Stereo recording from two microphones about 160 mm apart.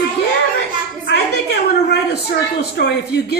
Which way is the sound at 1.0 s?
90° left.